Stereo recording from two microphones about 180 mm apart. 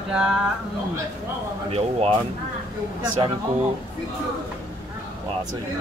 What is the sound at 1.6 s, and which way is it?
Speech, 35° right (ahead or behind).